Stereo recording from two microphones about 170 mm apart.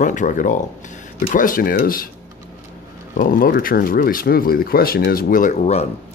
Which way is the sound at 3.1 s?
50° left (ahead or behind).